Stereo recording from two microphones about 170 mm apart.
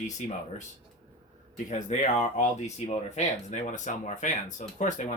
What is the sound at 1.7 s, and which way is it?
Speech, 45° left (ahead or behind).